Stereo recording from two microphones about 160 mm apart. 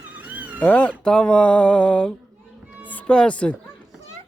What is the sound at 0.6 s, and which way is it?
Music, 10° left (ahead or behind).